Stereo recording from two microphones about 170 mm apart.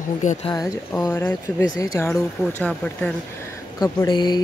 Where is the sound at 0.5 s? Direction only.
20° left (ahead or behind).